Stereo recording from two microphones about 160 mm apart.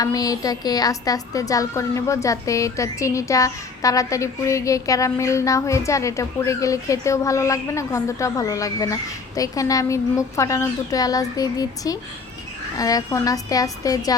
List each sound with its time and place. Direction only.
0.0 s a woman's voice: 20° left (ahead or behind)